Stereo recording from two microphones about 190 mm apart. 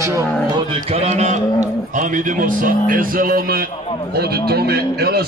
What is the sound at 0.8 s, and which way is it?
A man's voice, 35° right (ahead or behind).